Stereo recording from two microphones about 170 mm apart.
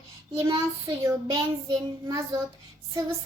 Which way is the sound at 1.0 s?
20° right (ahead or behind).